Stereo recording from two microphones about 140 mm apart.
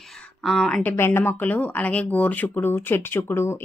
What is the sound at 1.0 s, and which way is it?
Speech, 15° left (ahead or behind).